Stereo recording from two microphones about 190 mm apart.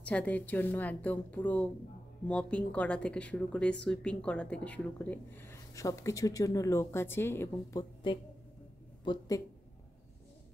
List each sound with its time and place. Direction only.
0.0 s speech: 5° left (ahead or behind)
8.0 s speech: 25° left (ahead or behind)